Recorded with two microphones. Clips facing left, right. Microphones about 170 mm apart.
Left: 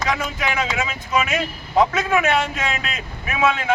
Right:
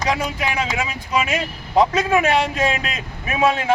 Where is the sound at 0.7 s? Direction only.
35° right (ahead or behind).